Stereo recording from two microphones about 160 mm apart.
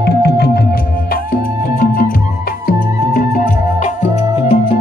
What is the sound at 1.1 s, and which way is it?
Music, 60° left (ahead or behind).